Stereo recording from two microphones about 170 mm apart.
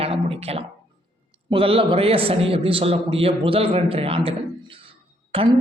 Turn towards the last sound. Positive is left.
turn(degrees=-35)  # may be behind; listen again after turning